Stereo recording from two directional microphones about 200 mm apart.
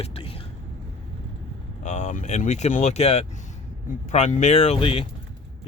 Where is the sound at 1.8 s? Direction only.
35° left (ahead or behind).